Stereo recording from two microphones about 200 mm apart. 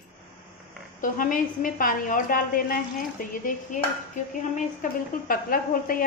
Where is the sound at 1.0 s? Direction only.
40° left (ahead or behind).